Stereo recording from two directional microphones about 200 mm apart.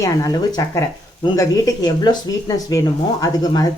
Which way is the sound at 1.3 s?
20° left (ahead or behind).